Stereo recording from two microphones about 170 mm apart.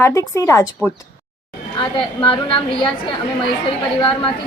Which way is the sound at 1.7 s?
30° left (ahead or behind).